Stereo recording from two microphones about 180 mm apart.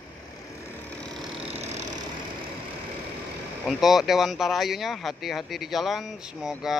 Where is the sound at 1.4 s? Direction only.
35° right (ahead or behind).